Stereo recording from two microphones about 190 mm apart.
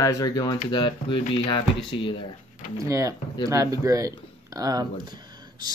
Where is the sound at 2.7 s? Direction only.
15° right (ahead or behind).